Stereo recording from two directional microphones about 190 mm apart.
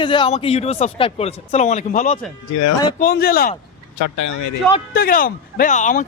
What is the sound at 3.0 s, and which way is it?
Speech, 50° left (ahead or behind).